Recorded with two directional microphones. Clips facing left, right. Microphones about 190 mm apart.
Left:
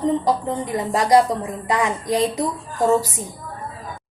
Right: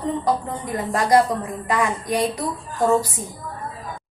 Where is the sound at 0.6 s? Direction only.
15° left (ahead or behind).